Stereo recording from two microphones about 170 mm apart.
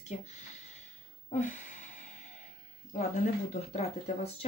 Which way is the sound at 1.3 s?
45° left (ahead or behind).